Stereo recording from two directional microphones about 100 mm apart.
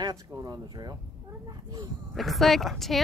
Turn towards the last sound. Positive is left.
turn(degrees=0)  # may be behind; listen again after turning